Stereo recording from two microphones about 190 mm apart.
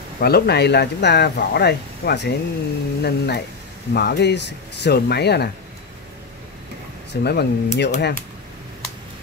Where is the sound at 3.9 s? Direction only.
55° left (ahead or behind).